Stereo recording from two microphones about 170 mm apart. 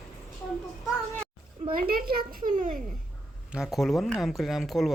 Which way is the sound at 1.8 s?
60° right (ahead or behind).